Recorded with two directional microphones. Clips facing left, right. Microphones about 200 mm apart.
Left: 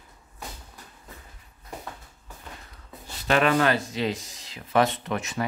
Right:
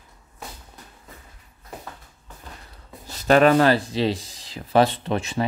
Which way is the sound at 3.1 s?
40° right (ahead or behind).